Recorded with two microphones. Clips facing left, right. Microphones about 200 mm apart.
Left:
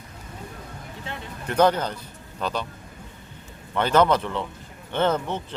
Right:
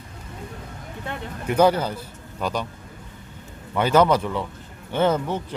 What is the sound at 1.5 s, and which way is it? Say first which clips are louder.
Speech: right 2 dB; 10° right (ahead or behind).